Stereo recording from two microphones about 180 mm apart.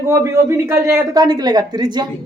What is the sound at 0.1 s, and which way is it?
Speech, 15° right (ahead or behind).